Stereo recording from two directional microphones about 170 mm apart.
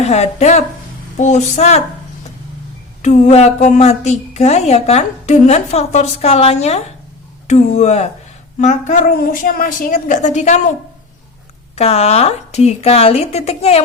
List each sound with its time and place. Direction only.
0.0 s a woman's voice: 40° left (ahead or behind)
3.0 s a woman's voice: 40° left (ahead or behind)
11.8 s a woman's voice: 40° left (ahead or behind)